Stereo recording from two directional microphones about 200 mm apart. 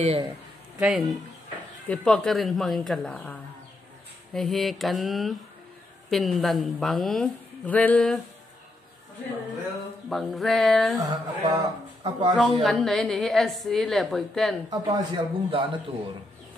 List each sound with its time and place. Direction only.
0.0 s speech: 30° right (ahead or behind)
0.7 s a woman's voice: centre (ahead or behind)
10.0 s a woman's voice: centre (ahead or behind)
11.0 s speech: 20° right (ahead or behind)
12.4 s a woman's voice: centre (ahead or behind)
14.7 s speech: 20° right (ahead or behind)